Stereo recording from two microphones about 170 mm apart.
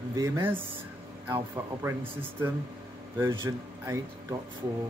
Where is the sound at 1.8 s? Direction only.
10° right (ahead or behind).